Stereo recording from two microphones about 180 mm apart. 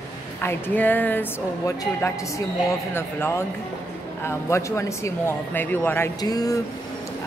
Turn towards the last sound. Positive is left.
turn(degrees=20)  # may be behind; listen again after turning